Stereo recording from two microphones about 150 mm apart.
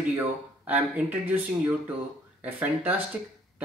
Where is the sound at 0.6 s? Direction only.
10° right (ahead or behind).